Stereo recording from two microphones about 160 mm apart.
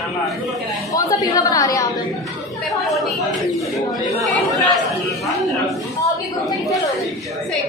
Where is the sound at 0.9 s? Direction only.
20° left (ahead or behind).